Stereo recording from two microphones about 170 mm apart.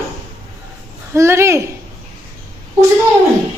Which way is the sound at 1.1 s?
15° right (ahead or behind).